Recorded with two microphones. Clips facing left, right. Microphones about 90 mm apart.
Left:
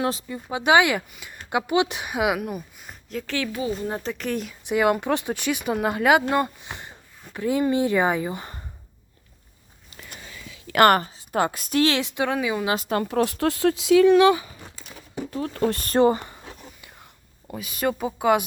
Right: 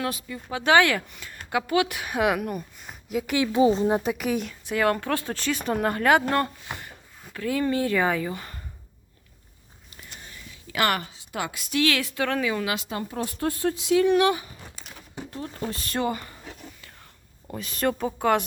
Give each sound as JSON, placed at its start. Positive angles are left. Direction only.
{"t": 0.0, "sound": "speech", "side_deg": 25}
{"t": 0.3, "sound": "speech", "side_deg": 15}
{"t": 2.1, "sound": "speech", "side_deg": 10}
{"t": 3.1, "sound": "a woman's voice", "side_deg": -10}
{"t": 4.7, "sound": "speech", "side_deg": 15}
{"t": 10.8, "sound": "a woman's voice", "side_deg": 45}
{"t": 11.9, "sound": "speech", "side_deg": 20}
{"t": 12.8, "sound": "speech", "side_deg": 65}
{"t": 15.4, "sound": "speech", "side_deg": 80}
{"t": 15.8, "sound": "a woman's voice", "side_deg": 35}
{"t": 17.5, "sound": "speech", "side_deg": 5}